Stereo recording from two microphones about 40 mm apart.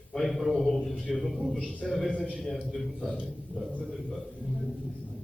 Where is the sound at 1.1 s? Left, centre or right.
Centre.